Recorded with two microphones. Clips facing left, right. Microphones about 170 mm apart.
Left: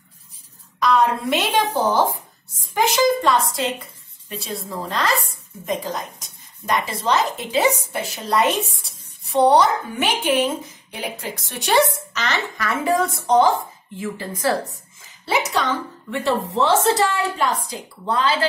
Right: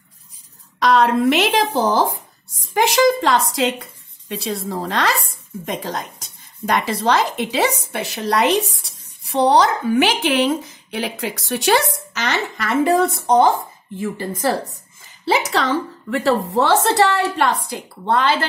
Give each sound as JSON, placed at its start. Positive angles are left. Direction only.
{"t": 0.7, "sound": "a woman's voice", "side_deg": -80}
{"t": 12.3, "sound": "a woman's voice", "side_deg": -80}
{"t": 15.2, "sound": "a woman's voice", "side_deg": -70}